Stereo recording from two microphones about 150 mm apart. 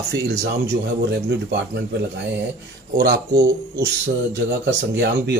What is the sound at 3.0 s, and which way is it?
Speech, 90° right.